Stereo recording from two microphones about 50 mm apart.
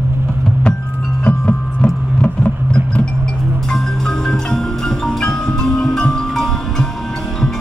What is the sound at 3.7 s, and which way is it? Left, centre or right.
Music, centre.